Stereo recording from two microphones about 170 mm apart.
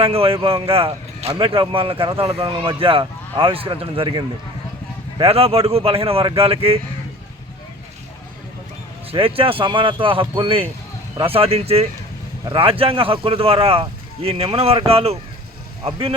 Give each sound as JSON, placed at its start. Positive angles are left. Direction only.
{"t": 0.0, "sound": "speech", "side_deg": -35}
{"t": 9.1, "sound": "speech", "side_deg": -30}